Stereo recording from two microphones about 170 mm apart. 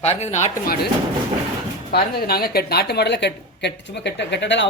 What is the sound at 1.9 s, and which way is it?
Speech, 65° left (ahead or behind).